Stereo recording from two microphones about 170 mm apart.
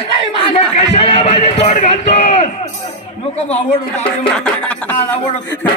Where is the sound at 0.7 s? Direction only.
35° left (ahead or behind).